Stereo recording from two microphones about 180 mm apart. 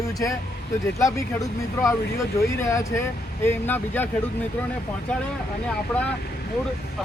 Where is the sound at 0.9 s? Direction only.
15° left (ahead or behind).